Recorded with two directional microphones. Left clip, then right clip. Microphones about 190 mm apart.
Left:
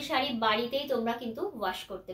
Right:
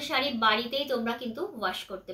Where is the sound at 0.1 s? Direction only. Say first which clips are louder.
Right 2 dB; 20° right (ahead or behind).